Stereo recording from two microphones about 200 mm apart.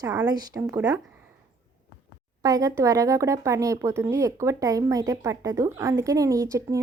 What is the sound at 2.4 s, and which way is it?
Speech, 15° right (ahead or behind).